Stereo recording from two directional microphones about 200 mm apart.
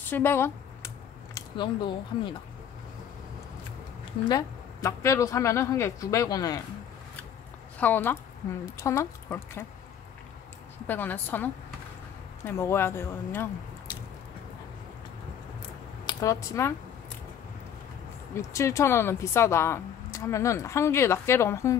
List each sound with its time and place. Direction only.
0.1 s computer keyboard: 10° left (ahead or behind)
1.6 s speech: 25° left (ahead or behind)
4.3 s speech: 15° left (ahead or behind)
7.8 s speech: 10° left (ahead or behind)
10.9 s speech: 10° left (ahead or behind)
16.1 s speech: 15° left (ahead or behind)
18.3 s speech: 15° left (ahead or behind)